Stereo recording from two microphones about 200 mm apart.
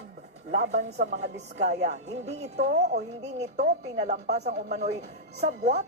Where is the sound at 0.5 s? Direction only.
55° right (ahead or behind).